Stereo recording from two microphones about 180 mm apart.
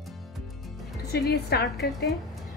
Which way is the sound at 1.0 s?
60° left (ahead or behind).